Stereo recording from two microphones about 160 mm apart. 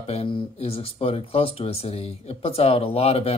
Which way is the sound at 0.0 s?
40° left (ahead or behind).